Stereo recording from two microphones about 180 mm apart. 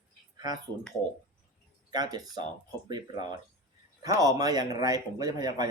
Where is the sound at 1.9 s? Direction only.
20° right (ahead or behind).